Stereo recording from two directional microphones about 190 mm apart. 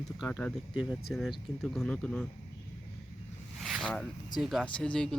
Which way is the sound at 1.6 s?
Centre (ahead or behind).